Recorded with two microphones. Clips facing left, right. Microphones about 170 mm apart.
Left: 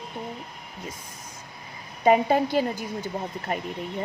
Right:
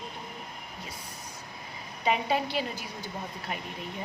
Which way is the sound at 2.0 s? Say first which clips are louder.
Left 8 dB; 45° left (ahead or behind).